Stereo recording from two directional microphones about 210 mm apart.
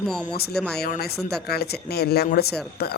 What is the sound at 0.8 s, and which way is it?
Speech, 45° left (ahead or behind).